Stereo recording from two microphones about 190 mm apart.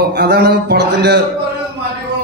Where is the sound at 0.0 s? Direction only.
60° right (ahead or behind).